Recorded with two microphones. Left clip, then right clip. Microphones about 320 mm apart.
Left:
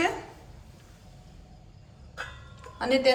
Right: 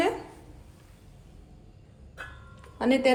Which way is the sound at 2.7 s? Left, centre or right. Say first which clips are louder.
Even; centre.